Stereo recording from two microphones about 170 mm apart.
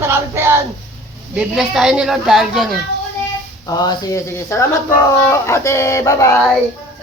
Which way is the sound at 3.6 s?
25° left (ahead or behind).